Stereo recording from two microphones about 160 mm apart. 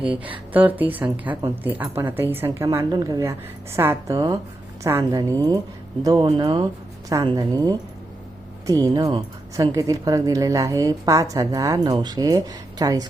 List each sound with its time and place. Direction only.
0.1 s a woman's voice: 10° right (ahead or behind)